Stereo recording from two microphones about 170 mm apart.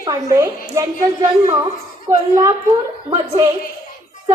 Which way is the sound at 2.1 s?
20° right (ahead or behind).